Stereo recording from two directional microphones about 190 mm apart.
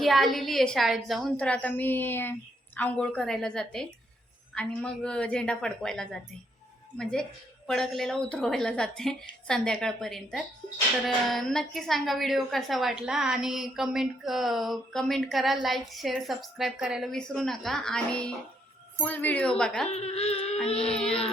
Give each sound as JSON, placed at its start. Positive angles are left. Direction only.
{"t": 0.0, "sound": "a woman's voice", "side_deg": 0}
{"t": 19.9, "sound": "speech", "side_deg": 35}
{"t": 20.9, "sound": "a woman's voice", "side_deg": 5}